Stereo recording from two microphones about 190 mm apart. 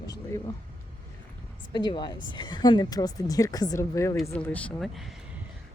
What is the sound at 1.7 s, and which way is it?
A woman's voice, 20° left (ahead or behind).